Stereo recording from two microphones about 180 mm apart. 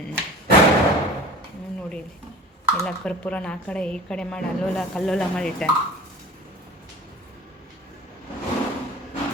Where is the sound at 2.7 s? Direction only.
5° left (ahead or behind).